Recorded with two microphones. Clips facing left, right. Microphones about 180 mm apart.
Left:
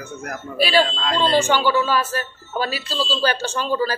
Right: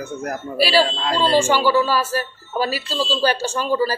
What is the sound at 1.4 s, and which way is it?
Speech, 10° right (ahead or behind).